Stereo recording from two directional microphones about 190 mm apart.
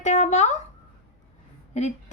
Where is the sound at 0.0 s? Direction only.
40° left (ahead or behind).